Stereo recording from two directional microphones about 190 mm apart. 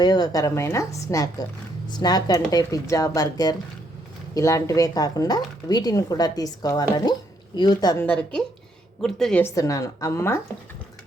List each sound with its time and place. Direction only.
0.0 s a woman's voice: 20° left (ahead or behind)
8.0 s a woman's voice: 5° left (ahead or behind)
9.4 s a woman's voice: 15° left (ahead or behind)